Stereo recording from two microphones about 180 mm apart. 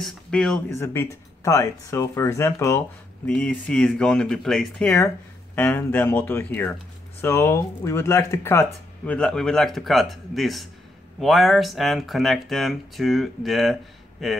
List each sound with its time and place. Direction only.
0.0 s speech: 5° left (ahead or behind)